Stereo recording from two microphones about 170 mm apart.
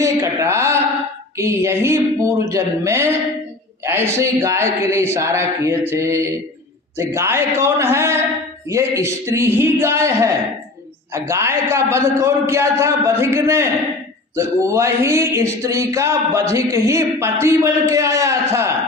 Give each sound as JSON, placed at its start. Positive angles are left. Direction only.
{"t": 0.0, "sound": "mantra", "side_deg": -20}
{"t": 1.4, "sound": "speech", "side_deg": -15}